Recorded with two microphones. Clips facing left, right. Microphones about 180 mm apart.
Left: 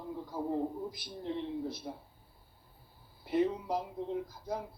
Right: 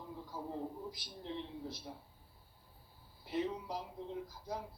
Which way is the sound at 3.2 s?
55° left (ahead or behind).